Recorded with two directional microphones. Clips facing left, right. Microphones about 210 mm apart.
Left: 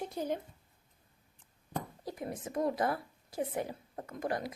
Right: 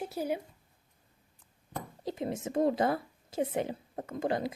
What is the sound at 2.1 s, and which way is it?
Speech, 25° right (ahead or behind).